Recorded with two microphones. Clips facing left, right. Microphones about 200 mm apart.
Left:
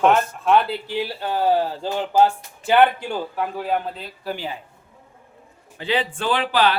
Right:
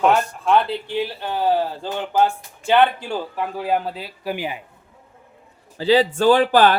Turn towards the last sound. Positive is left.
turn(degrees=-50)  # may be behind; listen again after turning